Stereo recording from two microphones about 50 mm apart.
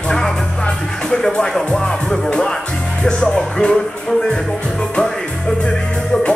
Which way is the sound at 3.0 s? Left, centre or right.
Centre.